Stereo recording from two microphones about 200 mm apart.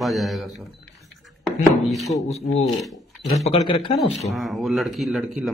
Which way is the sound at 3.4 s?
30° left (ahead or behind).